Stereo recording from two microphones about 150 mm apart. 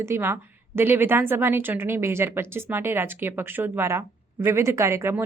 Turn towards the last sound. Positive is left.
turn(degrees=-15)  # may be behind; listen again after turning